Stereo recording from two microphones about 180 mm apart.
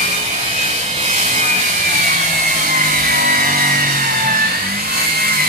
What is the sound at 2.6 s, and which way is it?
Vehicle, 50° right (ahead or behind).